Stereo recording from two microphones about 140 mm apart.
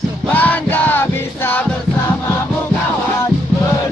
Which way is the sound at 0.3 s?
10° left (ahead or behind).